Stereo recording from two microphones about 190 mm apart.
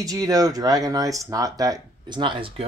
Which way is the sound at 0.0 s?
20° right (ahead or behind).